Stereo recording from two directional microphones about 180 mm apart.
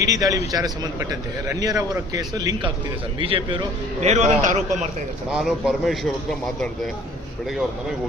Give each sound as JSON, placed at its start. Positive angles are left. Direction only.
{"t": 0.0, "sound": "a man's voice", "side_deg": -20}
{"t": 5.3, "sound": "a man's voice", "side_deg": -5}